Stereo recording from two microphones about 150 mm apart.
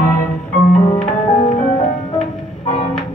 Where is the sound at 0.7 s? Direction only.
45° left (ahead or behind).